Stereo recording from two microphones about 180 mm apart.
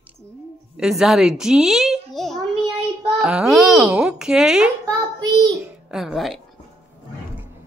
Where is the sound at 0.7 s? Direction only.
5° right (ahead or behind).